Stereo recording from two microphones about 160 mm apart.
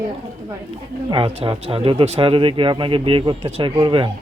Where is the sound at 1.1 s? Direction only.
30° right (ahead or behind).